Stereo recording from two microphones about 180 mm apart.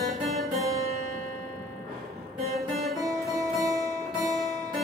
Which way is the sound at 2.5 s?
Centre (ahead or behind).